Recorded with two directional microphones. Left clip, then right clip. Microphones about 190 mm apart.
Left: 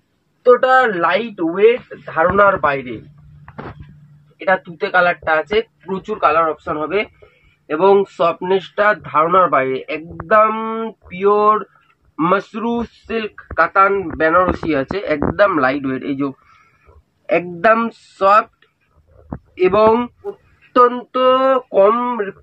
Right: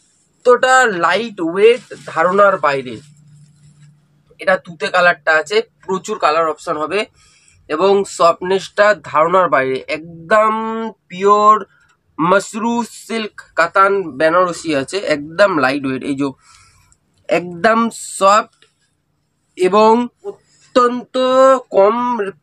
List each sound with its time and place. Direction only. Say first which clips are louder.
0.4 s speech: right 1 dB; 20° right (ahead or behind)
4.5 s speech: right 1 dB; 15° right (ahead or behind); by 18.5 s 55° right (ahead or behind)
19.5 s speech: right 1 dB; 65° right (ahead or behind)
20.7 s a sound: left 1 dB; 55° right (ahead or behind); by 22.3 s 40° right (ahead or behind)